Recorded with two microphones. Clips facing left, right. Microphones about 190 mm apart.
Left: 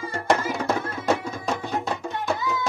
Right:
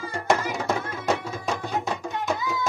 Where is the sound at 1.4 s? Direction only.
Centre (ahead or behind).